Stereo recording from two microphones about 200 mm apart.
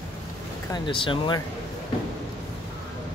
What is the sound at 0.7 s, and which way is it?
Speech, 25° left (ahead or behind).